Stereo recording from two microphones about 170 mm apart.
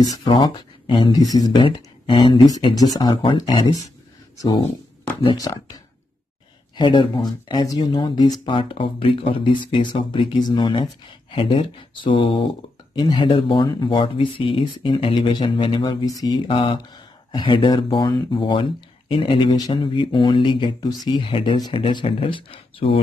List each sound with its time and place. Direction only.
0.0 s speech: 25° left (ahead or behind)
5.2 s speech: 20° left (ahead or behind)
6.8 s speech: 25° left (ahead or behind)